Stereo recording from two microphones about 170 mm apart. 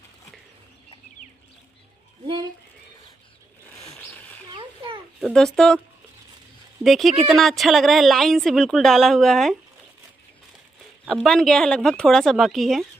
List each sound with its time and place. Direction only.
3.8 s zipper: 15° left (ahead or behind)
4.5 s a sound: 30° right (ahead or behind)
5.2 s speech: centre (ahead or behind)
6.8 s speech: centre (ahead or behind)
11.1 s speech: 5° left (ahead or behind)